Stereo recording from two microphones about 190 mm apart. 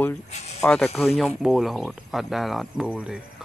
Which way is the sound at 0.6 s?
Centre (ahead or behind).